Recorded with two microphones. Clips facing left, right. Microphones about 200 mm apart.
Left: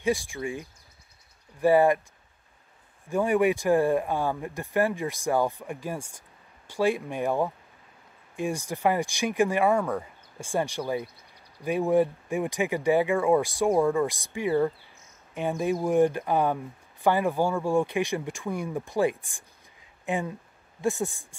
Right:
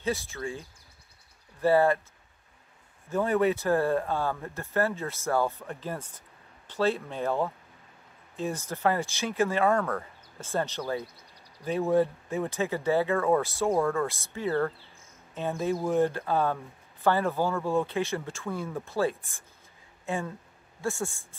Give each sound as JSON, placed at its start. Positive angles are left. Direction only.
{"t": 0.0, "sound": "speech", "side_deg": 15}
{"t": 3.1, "sound": "speech", "side_deg": 15}